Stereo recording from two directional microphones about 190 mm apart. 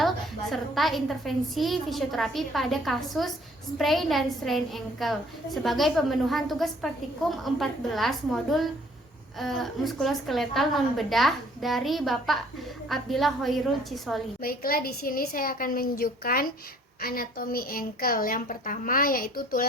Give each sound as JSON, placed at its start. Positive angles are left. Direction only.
{"t": 0.5, "sound": "a woman's voice", "side_deg": 0}
{"t": 14.4, "sound": "a woman's voice", "side_deg": 50}